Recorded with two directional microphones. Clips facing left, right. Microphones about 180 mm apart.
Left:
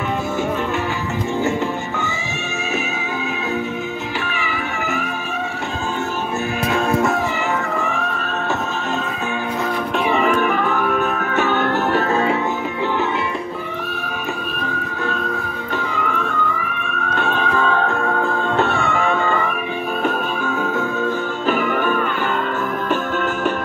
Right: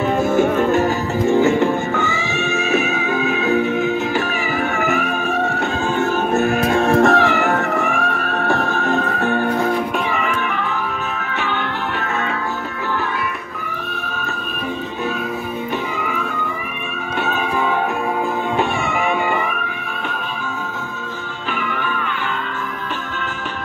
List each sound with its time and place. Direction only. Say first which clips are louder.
0.4 s music: right 8 dB; 45° right (ahead or behind)
1.4 s music: right 5 dB; 60° right (ahead or behind)
4.8 s music: right 4 dB; 60° right (ahead or behind)
6.8 s music: right 5 dB; 75° right (ahead or behind)
8.7 s music: right 4 dB; 55° right (ahead or behind)
10.1 s music: left 5 dB; 40° left (ahead or behind)
16.0 s music: left 2 dB; 5° right (ahead or behind)
21.5 s music: left 6 dB; 45° left (ahead or behind)